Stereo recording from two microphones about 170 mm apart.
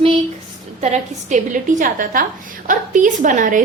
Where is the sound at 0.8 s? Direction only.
45° right (ahead or behind).